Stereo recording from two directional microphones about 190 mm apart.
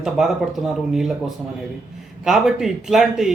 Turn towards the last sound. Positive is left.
turn(degrees=0)  # may be behind; listen again after turning